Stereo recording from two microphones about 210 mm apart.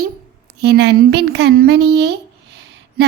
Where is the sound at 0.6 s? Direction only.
50° right (ahead or behind).